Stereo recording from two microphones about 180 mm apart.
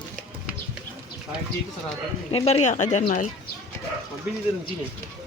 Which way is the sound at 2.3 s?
30° left (ahead or behind).